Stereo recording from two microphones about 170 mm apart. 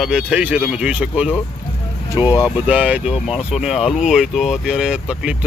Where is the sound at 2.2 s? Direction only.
20° left (ahead or behind).